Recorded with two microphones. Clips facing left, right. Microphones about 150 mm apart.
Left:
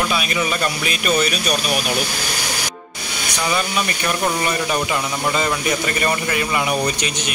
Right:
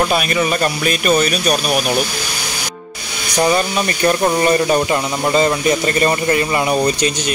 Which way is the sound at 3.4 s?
40° right (ahead or behind).